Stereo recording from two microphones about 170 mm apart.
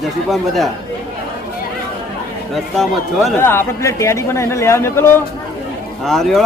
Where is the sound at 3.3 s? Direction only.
15° left (ahead or behind).